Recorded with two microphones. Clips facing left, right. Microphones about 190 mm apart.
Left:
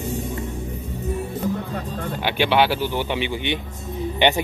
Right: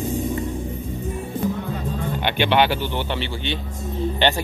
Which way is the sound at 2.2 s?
5° left (ahead or behind).